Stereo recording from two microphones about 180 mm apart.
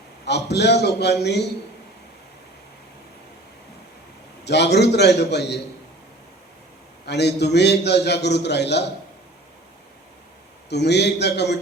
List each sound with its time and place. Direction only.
0.3 s a man's voice: 70° left (ahead or behind)
4.4 s a man's voice: 70° left (ahead or behind)
7.0 s a man's voice: 70° left (ahead or behind)
10.7 s a man's voice: 70° left (ahead or behind)